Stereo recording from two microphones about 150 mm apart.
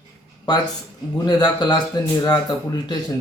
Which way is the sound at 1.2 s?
30° left (ahead or behind).